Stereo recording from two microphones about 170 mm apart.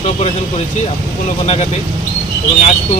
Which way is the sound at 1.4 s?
35° left (ahead or behind).